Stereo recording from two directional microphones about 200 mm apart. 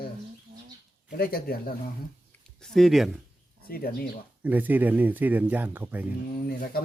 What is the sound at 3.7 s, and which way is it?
Speech, 50° left (ahead or behind).